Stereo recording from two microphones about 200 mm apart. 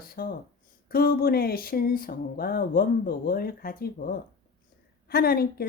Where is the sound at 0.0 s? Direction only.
50° left (ahead or behind).